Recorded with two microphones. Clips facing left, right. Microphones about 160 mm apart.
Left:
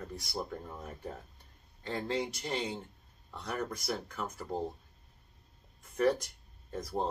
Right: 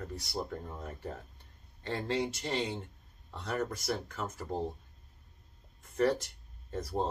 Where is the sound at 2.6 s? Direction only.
Centre (ahead or behind).